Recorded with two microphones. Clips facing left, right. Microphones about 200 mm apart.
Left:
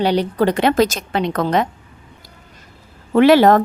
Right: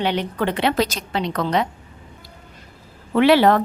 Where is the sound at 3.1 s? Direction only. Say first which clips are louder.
Left 4 dB; 45° left (ahead or behind).